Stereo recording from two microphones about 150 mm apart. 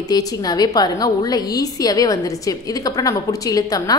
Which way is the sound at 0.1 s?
25° left (ahead or behind).